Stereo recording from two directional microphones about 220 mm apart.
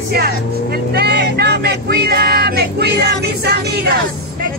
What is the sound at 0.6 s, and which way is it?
Vehicle, 45° right (ahead or behind).